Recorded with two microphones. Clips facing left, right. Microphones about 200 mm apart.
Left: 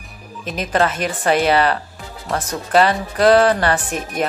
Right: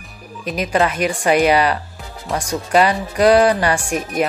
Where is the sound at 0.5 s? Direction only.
10° right (ahead or behind).